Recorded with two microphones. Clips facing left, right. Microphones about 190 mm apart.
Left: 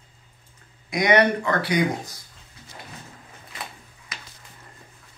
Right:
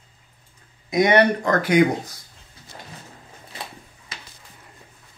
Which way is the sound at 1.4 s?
50° right (ahead or behind).